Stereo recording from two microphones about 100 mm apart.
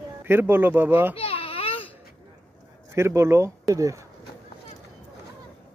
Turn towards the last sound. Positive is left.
turn(degrees=-35)  # may be behind; listen again after turning